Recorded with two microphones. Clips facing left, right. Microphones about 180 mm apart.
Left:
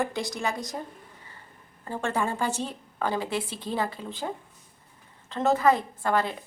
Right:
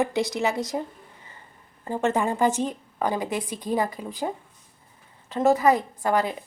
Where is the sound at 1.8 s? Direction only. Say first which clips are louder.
Right 5 dB; 15° right (ahead or behind).